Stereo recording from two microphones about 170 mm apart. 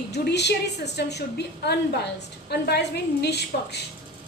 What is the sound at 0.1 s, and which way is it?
A woman's voice, 85° left.